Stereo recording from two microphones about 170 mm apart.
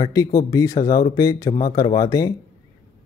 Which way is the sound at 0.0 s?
20° left (ahead or behind).